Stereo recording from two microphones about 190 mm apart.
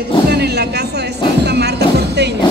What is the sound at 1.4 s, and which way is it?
Music, 60° right (ahead or behind).